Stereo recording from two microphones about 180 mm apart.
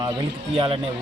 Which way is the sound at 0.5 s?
30° right (ahead or behind).